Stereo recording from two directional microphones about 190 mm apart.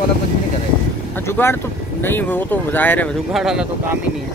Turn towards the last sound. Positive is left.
turn(degrees=-5)  # may be behind; listen again after turning